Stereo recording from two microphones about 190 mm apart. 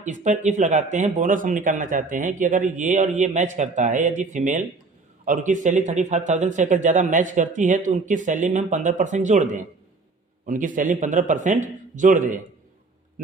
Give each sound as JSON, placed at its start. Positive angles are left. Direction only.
{"t": 0.0, "sound": "a man's voice", "side_deg": -40}